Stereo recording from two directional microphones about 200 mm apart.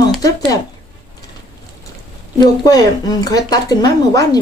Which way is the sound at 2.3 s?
20° left (ahead or behind).